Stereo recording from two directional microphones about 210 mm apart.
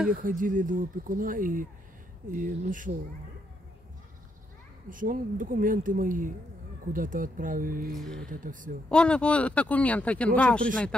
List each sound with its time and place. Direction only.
0.1 s speech: 40° right (ahead or behind)
4.8 s speech: 40° right (ahead or behind)
7.9 s speech: centre (ahead or behind)
8.3 s speech: 40° right (ahead or behind)
8.8 s speech: 5° left (ahead or behind)